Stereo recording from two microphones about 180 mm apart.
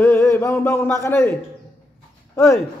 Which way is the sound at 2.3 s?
20° left (ahead or behind).